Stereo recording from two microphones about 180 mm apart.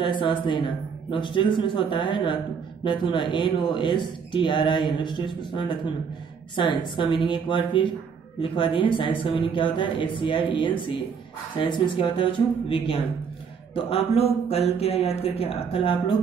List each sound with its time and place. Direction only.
0.0 s speech: 25° left (ahead or behind)